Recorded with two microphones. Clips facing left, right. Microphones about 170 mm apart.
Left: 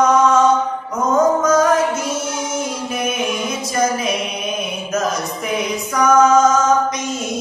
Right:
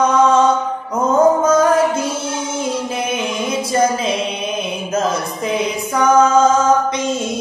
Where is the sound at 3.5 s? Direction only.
30° right (ahead or behind).